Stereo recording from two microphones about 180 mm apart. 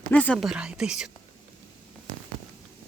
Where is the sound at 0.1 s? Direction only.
10° left (ahead or behind).